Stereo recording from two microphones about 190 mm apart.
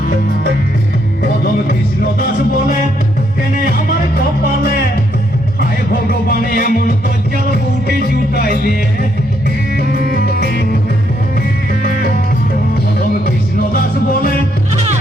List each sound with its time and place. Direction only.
5.5 s music: 55° left (ahead or behind)
8.4 s music: 55° left (ahead or behind)
9.7 s music: 50° left (ahead or behind)
13.7 s music: 50° left (ahead or behind)